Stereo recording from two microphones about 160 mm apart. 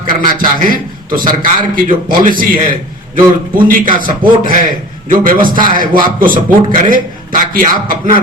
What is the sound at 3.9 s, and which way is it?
Speech, 30° right (ahead or behind).